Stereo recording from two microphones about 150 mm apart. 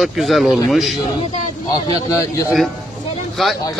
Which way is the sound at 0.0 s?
Centre (ahead or behind).